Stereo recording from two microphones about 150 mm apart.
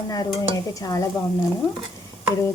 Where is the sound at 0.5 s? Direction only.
20° left (ahead or behind).